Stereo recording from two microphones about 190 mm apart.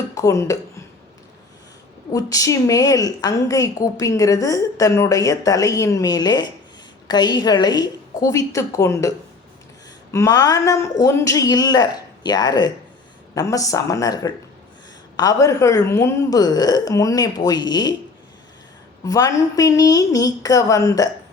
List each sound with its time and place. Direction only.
0.1 s speech: 15° left (ahead or behind)
2.1 s a woman's voice: 15° left (ahead or behind)
19.0 s a woman's voice: 20° left (ahead or behind)